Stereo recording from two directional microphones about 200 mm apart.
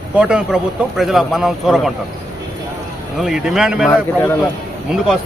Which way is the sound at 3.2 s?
Centre (ahead or behind).